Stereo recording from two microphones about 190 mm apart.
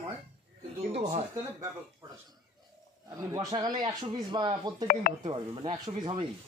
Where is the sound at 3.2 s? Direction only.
20° right (ahead or behind).